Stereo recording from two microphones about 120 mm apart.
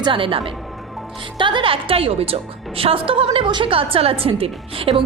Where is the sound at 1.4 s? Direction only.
45° right (ahead or behind).